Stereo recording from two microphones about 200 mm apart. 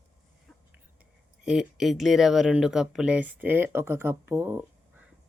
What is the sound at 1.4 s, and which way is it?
Speech, centre (ahead or behind).